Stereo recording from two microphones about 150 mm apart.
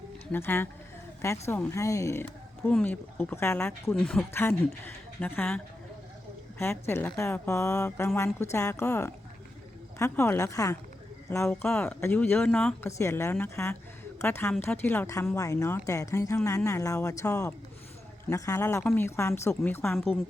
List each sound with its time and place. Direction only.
0.3 s speech: 15° left (ahead or behind)
13.0 s speech: 15° left (ahead or behind)